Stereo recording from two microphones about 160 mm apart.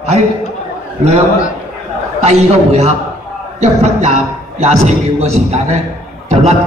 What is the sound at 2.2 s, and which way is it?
A man's voice, 40° right (ahead or behind).